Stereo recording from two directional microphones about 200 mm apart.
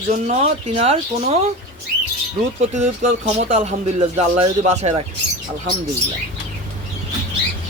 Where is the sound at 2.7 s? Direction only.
35° right (ahead or behind).